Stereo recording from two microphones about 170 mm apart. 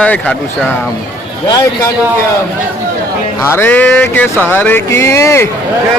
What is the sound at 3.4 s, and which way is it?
Speech, 15° left (ahead or behind).